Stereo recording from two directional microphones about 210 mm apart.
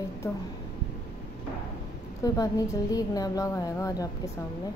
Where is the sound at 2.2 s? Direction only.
15° left (ahead or behind).